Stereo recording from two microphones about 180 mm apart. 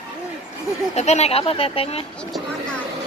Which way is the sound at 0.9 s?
35° left (ahead or behind).